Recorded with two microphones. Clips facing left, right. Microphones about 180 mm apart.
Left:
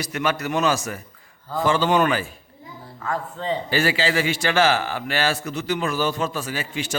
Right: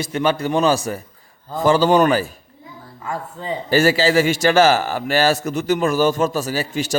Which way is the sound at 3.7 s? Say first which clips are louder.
Right 8 dB; 40° right (ahead or behind).